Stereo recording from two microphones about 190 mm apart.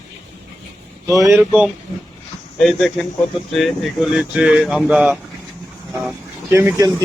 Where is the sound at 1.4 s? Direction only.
5° right (ahead or behind).